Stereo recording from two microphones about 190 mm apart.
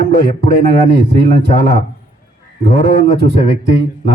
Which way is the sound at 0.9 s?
60° right (ahead or behind).